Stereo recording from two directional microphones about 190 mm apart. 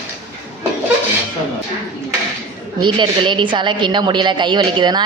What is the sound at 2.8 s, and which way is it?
A woman's voice, 25° right (ahead or behind).